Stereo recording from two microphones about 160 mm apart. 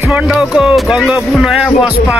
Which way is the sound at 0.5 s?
5° right (ahead or behind).